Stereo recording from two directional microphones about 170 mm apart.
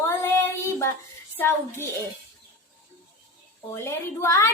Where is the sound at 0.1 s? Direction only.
15° left (ahead or behind).